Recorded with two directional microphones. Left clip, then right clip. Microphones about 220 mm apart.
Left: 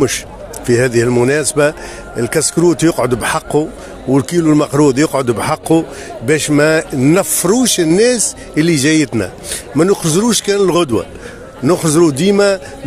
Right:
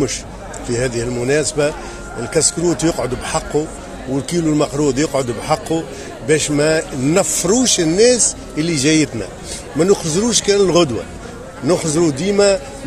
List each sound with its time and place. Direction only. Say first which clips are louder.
0.7 s a man's voice: left 8 dB; 55° left (ahead or behind)